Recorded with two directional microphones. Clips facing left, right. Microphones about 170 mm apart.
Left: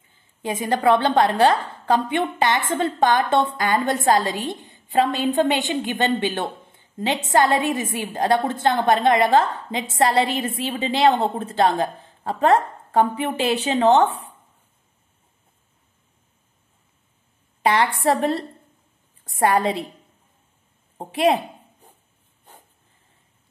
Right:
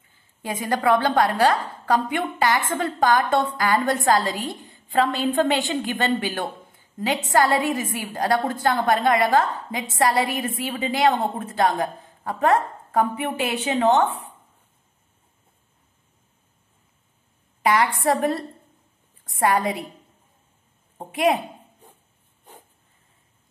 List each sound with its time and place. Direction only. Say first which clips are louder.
0.4 s a woman's voice: left 2 dB; 20° left (ahead or behind)
17.6 s a sound: left 1 dB; 30° left (ahead or behind)
18.0 s a woman's voice: left 1 dB; 30° left (ahead or behind)
21.0 s a woman's voice: left 2 dB; 30° left (ahead or behind)